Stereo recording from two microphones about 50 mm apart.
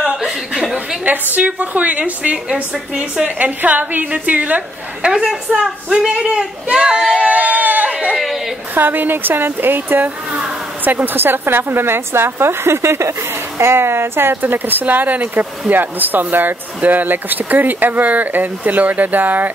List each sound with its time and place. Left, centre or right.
1.0 s speech: right
2.5 s speech: centre
3.3 s speech: right
5.2 s speech: centre
7.2 s a sound: right
8.7 s a woman's voice: right